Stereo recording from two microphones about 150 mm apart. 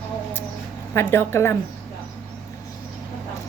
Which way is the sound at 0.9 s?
15° left (ahead or behind).